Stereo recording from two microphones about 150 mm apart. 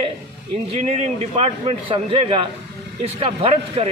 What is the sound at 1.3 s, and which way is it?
A man's voice, 40° right (ahead or behind).